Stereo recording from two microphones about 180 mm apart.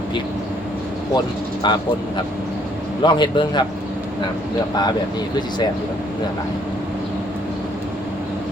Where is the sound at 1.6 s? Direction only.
25° left (ahead or behind).